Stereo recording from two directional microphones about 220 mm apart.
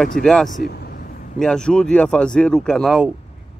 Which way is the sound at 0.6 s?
45° left (ahead or behind).